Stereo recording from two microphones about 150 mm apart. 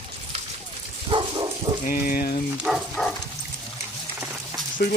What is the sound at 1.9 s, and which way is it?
Speech, 70° left (ahead or behind).